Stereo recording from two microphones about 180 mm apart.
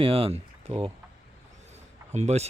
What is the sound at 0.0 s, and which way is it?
Speech, 30° right (ahead or behind).